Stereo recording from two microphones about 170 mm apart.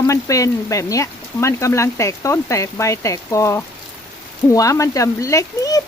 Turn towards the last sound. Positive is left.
turn(degrees=20)  # may be behind; listen again after turning